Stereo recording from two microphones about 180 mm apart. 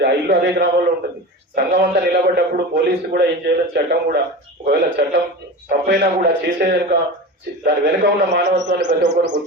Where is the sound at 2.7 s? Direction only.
65° right (ahead or behind).